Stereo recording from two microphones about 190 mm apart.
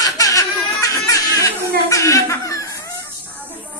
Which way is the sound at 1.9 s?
15° left (ahead or behind).